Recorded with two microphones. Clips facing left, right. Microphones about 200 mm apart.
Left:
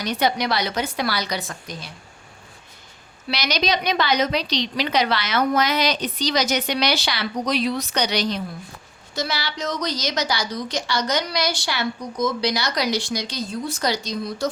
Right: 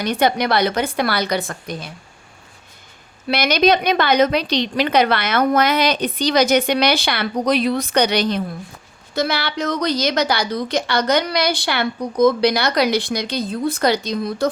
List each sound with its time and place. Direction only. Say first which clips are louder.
0.0 s a woman's voice: right 4 dB; 55° right (ahead or behind)
3.2 s a woman's voice: right 8 dB; 55° right (ahead or behind)